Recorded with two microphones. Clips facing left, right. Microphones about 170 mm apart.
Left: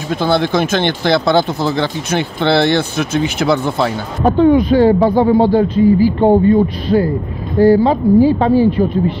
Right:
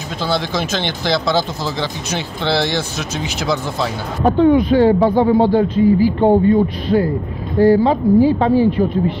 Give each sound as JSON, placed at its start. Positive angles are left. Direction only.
{"t": 0.1, "sound": "speech", "side_deg": 55}
{"t": 4.2, "sound": "speech", "side_deg": 35}